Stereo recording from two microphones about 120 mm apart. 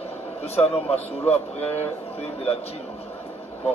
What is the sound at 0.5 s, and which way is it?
A man's voice, 55° left (ahead or behind).